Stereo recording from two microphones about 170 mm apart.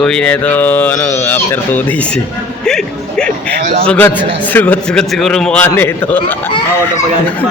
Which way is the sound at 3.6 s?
45° right (ahead or behind).